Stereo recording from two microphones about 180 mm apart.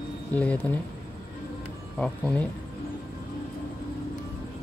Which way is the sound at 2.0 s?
5° left (ahead or behind).